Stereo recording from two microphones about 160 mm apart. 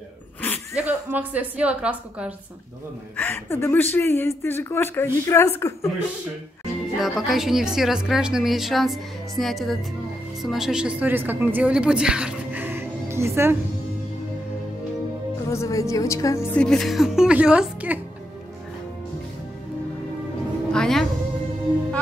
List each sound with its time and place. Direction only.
0.7 s a woman's voice: 10° right (ahead or behind)
3.2 s speech: 15° left (ahead or behind)
7.0 s a woman's voice: centre (ahead or behind)
15.5 s speech: 20° left (ahead or behind)
16.5 s a woman's voice: 5° left (ahead or behind)
20.7 s a woman's voice: 5° left (ahead or behind)